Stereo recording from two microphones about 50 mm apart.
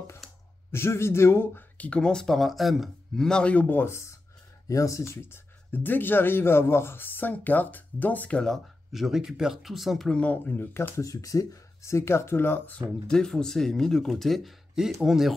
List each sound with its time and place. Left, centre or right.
0.7 s speech: left
1.8 s speech: left; by 2.9 s centre
3.2 s speech: centre
3.5 s speech: left
3.8 s speech: left
4.7 s speech: left
5.1 s speech: left
5.7 s speech: left
8.9 s speech: centre
10.0 s speech: left
10.3 s speech: left
10.8 s speech: left
13.1 s speech: centre
15.0 s speech: centre